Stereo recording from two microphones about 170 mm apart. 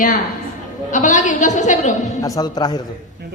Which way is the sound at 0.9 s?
45° left (ahead or behind).